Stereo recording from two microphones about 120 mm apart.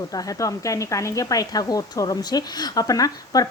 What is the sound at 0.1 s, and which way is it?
Speech, 30° left (ahead or behind).